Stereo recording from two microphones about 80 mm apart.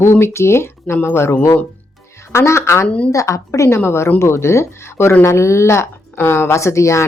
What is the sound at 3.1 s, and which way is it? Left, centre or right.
A woman's voice, left.